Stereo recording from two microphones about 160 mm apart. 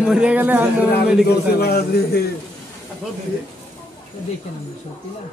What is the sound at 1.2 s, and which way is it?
A man's voice, 80° left.